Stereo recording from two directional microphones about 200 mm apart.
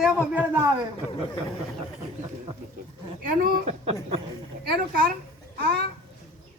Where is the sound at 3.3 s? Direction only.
45° right (ahead or behind).